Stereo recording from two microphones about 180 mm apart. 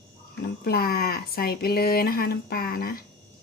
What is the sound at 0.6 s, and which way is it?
Speech, 60° left (ahead or behind).